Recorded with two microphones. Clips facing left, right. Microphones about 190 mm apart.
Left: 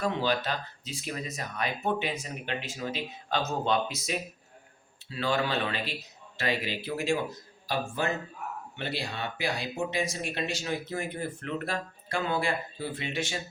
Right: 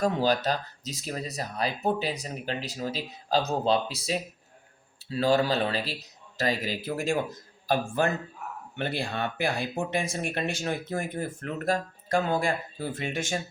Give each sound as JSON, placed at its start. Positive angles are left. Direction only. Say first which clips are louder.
{"t": 0.0, "sound": "speech", "louder": "right 4 dB", "side_deg": -40}